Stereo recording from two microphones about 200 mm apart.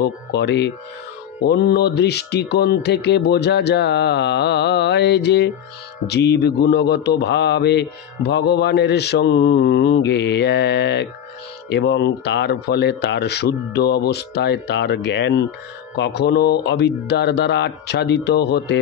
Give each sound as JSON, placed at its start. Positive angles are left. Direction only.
{"t": 0.0, "sound": "music", "side_deg": 55}